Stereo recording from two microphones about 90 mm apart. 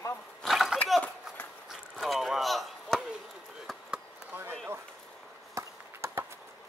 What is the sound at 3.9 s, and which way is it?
Chop, 20° right (ahead or behind).